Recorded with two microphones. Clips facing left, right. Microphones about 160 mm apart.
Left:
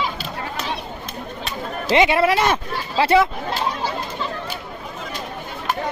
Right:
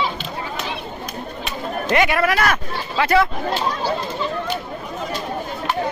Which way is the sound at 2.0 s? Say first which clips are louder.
Left 3 dB; 25° left (ahead or behind).